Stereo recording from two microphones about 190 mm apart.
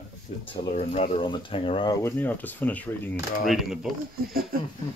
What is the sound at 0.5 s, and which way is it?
Speech, 30° left (ahead or behind).